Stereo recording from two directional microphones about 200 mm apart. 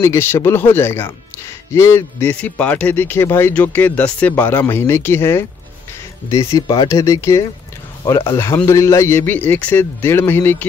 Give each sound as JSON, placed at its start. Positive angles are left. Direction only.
{"t": 0.0, "sound": "a man's voice", "side_deg": 15}